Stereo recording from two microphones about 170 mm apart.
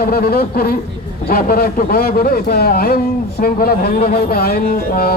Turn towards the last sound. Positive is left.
turn(degrees=60)  # may be behind; listen again after turning